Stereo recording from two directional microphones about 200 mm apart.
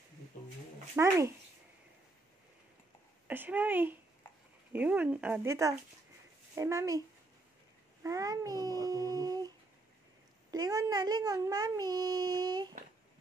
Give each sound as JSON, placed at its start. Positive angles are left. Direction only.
{"t": 0.9, "sound": "speech", "side_deg": -15}
{"t": 3.3, "sound": "speech", "side_deg": -10}
{"t": 8.0, "sound": "child singing", "side_deg": -15}
{"t": 10.5, "sound": "a child's voice", "side_deg": -20}